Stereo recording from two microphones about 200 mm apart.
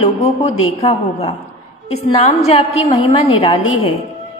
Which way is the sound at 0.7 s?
30° left (ahead or behind).